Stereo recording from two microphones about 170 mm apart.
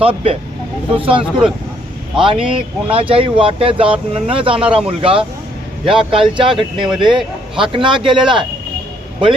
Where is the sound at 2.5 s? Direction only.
30° right (ahead or behind).